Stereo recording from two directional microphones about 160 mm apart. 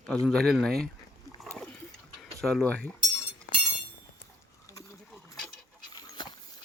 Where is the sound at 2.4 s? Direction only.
5° left (ahead or behind).